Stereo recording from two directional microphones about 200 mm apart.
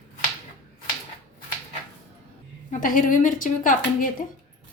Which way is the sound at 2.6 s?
40° left (ahead or behind).